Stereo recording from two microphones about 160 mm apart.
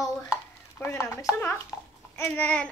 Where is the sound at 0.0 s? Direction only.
15° left (ahead or behind).